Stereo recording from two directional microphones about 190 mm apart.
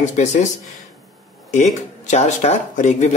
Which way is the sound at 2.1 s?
35° left (ahead or behind).